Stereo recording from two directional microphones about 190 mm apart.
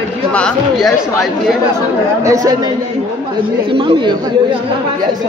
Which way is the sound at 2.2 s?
20° right (ahead or behind).